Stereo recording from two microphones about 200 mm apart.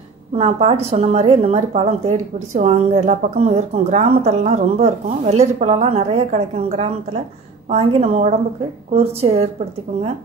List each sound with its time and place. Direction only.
0.4 s a woman's voice: 30° right (ahead or behind)